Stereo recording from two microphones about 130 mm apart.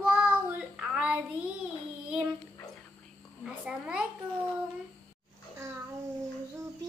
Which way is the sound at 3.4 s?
5° right (ahead or behind).